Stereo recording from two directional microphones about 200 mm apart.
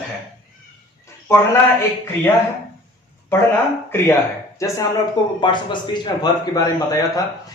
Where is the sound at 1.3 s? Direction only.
15° left (ahead or behind).